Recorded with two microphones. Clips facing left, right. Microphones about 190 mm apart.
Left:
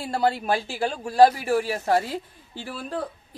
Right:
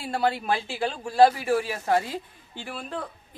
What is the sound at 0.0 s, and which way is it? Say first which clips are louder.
Speech: left 2 dB; 40° left (ahead or behind).